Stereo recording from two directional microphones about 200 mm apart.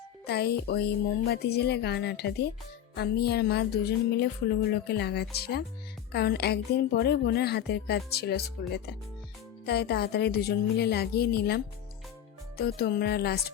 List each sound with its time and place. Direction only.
0.3 s a woman's voice: 55° left (ahead or behind)